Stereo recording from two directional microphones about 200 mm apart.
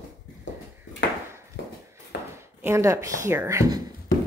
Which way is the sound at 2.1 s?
60° left (ahead or behind).